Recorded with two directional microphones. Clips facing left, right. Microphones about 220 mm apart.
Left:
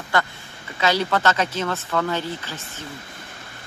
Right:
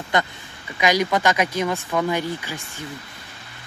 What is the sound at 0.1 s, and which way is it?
Speech, 20° right (ahead or behind).